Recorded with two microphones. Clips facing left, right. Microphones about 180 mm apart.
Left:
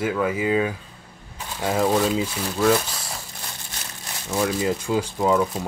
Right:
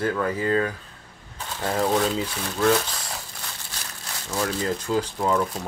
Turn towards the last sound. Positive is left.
turn(degrees=5)  # may be behind; listen again after turning